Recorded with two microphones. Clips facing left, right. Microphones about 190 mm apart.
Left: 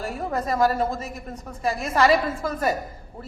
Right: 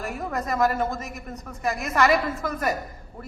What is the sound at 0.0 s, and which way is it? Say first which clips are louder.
A woman's voice: left 2 dB; 30° left (ahead or behind).